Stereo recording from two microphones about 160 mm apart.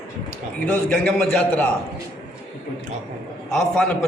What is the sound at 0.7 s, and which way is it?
Speech, 5° left (ahead or behind).